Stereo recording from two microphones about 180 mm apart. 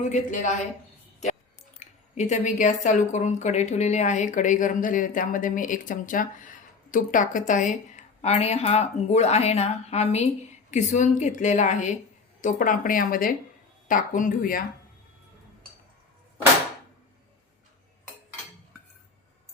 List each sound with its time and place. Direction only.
0.0 s a woman's voice: 45° left (ahead or behind)
1.8 s a woman's voice: 40° left (ahead or behind)